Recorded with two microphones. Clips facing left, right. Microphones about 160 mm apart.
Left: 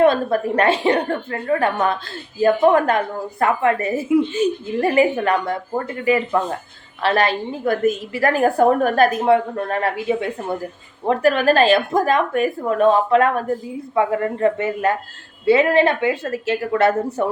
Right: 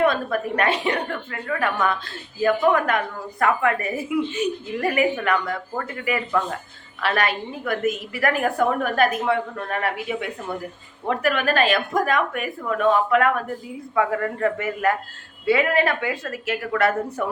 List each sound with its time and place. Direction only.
0.0 s a woman's voice: 30° left (ahead or behind)